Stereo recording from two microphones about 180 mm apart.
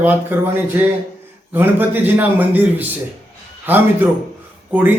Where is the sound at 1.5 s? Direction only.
10° right (ahead or behind).